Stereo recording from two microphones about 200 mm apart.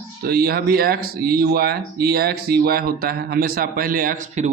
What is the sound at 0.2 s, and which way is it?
Speech, 45° right (ahead or behind).